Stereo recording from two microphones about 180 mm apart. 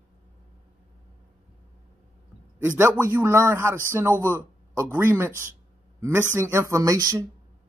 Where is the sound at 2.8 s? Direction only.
10° right (ahead or behind).